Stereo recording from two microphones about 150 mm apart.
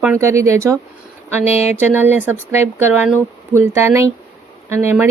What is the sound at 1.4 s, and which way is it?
Speech, 45° left (ahead or behind).